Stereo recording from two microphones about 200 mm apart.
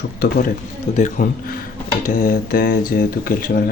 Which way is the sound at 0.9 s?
40° left (ahead or behind).